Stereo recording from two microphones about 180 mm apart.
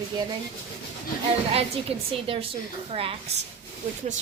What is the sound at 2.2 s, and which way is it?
Speech, 30° right (ahead or behind).